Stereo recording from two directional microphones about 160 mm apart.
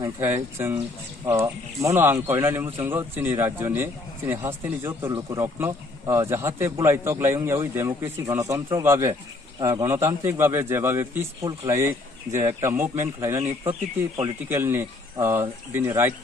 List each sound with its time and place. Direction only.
0.2 s speech: 15° right (ahead or behind)
13.4 s speech: 40° right (ahead or behind)
14.5 s speech: 15° right (ahead or behind)